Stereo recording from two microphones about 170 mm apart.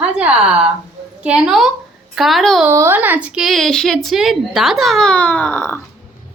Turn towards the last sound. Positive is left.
turn(degrees=10)  # may be behind; listen again after turning